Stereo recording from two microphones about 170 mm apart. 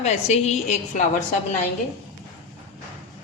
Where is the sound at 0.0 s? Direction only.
40° left (ahead or behind).